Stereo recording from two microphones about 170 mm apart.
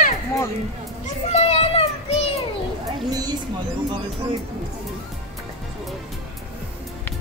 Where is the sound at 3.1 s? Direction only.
25° right (ahead or behind).